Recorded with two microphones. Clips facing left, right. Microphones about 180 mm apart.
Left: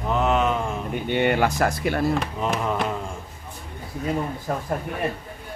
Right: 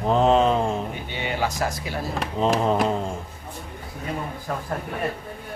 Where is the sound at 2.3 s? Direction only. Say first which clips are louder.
Right 4 dB; 30° right (ahead or behind).